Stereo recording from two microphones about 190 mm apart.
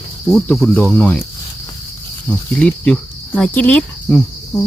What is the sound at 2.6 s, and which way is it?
Speech, 5° left (ahead or behind).